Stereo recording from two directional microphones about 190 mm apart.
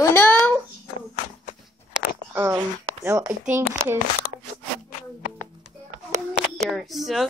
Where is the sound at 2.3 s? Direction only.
15° right (ahead or behind).